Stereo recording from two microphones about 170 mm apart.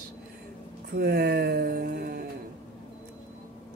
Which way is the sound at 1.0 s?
65° right (ahead or behind).